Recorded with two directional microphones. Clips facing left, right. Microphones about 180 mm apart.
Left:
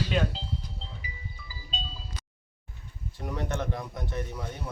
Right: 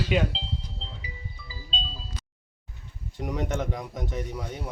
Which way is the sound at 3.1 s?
15° right (ahead or behind).